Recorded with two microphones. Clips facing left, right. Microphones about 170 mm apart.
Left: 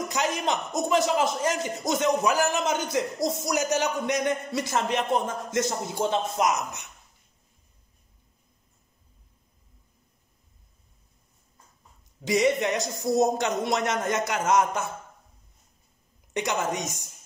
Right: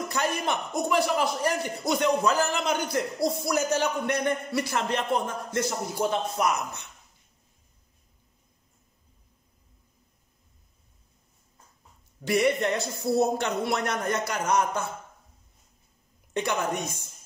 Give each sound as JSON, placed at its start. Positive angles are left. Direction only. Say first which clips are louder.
{"t": 0.1, "sound": "a man's voice", "louder": "left 1 dB", "side_deg": 15}
{"t": 12.3, "sound": "a man's voice", "louder": "left 1 dB", "side_deg": 20}
{"t": 16.3, "sound": "a woman's voice", "louder": "even", "side_deg": 15}